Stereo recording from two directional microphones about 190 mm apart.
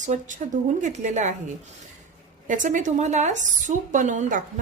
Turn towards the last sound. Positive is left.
turn(degrees=-40)  # may be behind; listen again after turning